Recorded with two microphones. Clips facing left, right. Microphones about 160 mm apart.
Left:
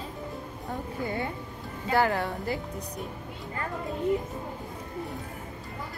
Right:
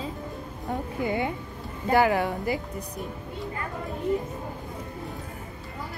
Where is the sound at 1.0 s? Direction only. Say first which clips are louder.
Right 5 dB; 15° right (ahead or behind).